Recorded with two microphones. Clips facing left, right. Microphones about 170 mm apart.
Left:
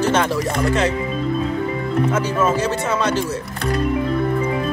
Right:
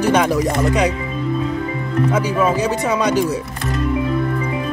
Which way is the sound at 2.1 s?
15° right (ahead or behind).